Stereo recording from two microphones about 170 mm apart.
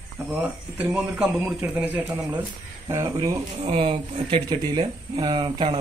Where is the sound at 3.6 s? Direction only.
30° right (ahead or behind).